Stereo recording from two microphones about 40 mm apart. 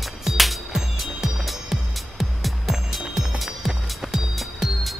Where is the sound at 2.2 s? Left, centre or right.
Centre.